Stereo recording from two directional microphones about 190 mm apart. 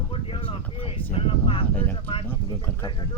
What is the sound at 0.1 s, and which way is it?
Wind noise, 30° left (ahead or behind).